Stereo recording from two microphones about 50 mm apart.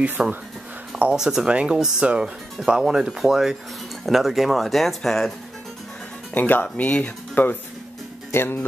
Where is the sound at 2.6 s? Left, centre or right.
Centre.